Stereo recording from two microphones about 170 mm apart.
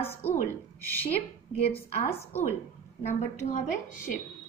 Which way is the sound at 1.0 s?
35° left (ahead or behind).